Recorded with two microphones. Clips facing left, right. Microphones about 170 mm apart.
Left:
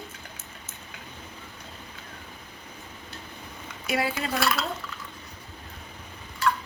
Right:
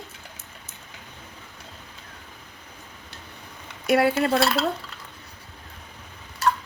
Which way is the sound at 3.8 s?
60° right (ahead or behind).